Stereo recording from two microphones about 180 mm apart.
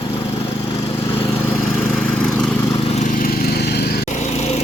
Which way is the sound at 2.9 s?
40° left (ahead or behind).